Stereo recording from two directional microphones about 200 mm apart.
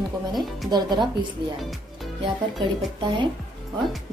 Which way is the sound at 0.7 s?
20° right (ahead or behind).